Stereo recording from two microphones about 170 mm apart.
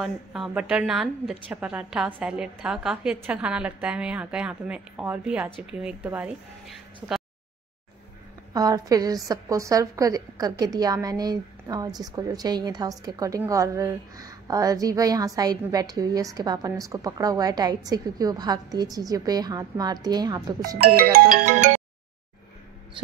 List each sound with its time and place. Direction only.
0.0 s a woman's voice: 5° right (ahead or behind)
8.5 s a woman's voice: 20° right (ahead or behind)
20.7 s ringtone: 60° right (ahead or behind)